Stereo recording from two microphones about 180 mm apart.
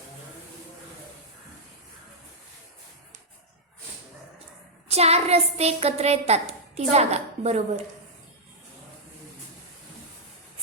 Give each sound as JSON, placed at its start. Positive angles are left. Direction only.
{"t": 4.9, "sound": "a woman's voice", "side_deg": -35}